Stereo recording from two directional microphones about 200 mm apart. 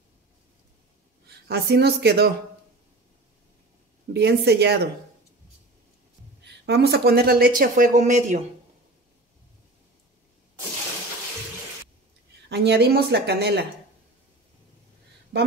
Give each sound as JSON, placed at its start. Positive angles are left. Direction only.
{"t": 1.5, "sound": "a woman's voice", "side_deg": -55}
{"t": 4.1, "sound": "a woman's voice", "side_deg": -55}
{"t": 6.4, "sound": "speech", "side_deg": -55}
{"t": 12.4, "sound": "a woman's voice", "side_deg": -55}